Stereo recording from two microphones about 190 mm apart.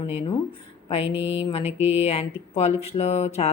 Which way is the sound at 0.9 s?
30° left (ahead or behind).